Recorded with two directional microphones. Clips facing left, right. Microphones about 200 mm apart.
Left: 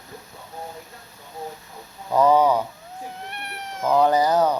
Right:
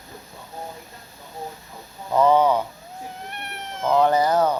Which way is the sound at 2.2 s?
15° left (ahead or behind).